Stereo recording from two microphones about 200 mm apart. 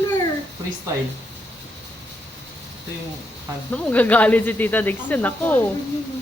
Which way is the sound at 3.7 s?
5° left (ahead or behind).